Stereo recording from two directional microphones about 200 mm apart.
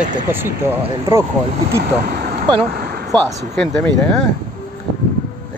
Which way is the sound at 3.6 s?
5° left (ahead or behind).